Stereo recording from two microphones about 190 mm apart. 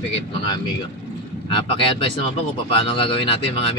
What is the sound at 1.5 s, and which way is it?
Speech, 25° left (ahead or behind).